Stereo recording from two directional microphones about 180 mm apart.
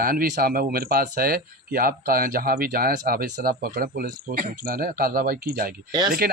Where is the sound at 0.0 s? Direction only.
55° right (ahead or behind).